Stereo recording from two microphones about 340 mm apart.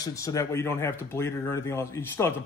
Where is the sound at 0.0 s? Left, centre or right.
Centre.